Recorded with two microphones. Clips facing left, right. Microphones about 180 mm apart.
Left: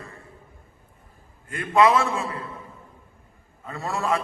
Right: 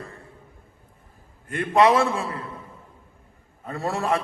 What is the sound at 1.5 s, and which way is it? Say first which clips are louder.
Speech: right 1 dB; 35° right (ahead or behind).